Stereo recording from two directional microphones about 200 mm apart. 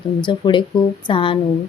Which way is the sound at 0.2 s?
25° left (ahead or behind).